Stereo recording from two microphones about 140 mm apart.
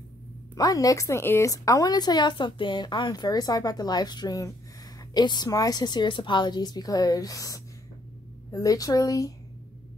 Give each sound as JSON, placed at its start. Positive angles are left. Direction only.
{"t": 0.6, "sound": "speech", "side_deg": 25}